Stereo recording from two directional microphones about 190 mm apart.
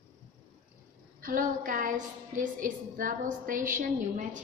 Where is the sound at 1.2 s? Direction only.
45° right (ahead or behind).